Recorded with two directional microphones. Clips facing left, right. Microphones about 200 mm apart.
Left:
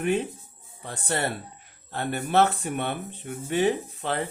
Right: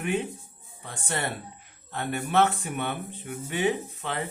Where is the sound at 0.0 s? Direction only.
35° left (ahead or behind).